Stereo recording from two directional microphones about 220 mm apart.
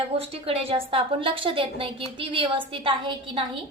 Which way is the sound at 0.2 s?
25° right (ahead or behind).